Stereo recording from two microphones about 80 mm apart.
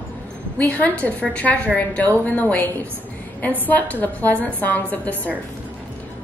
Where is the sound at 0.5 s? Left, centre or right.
Centre.